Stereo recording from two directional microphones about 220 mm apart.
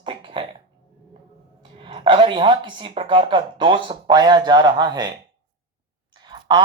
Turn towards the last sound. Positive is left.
turn(degrees=-20)  # may be behind; listen again after turning